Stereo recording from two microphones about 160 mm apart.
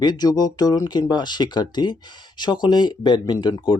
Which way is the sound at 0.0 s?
25° left (ahead or behind).